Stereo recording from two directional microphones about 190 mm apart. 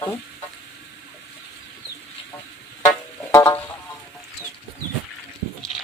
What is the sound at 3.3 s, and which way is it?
Music, 15° left (ahead or behind).